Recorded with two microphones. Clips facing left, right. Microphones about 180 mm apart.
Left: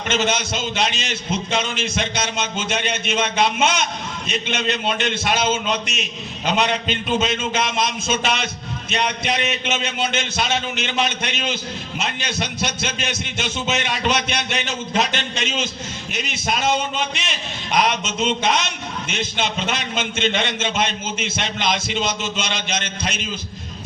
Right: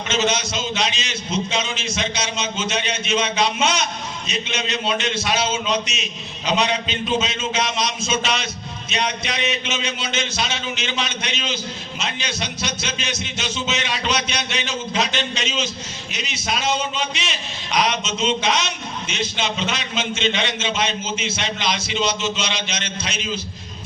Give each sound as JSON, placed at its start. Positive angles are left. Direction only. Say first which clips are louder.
{"t": 0.1, "sound": "a man's voice", "louder": "even", "side_deg": 55}